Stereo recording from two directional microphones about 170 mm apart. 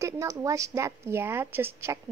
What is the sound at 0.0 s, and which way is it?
Speech, 20° right (ahead or behind).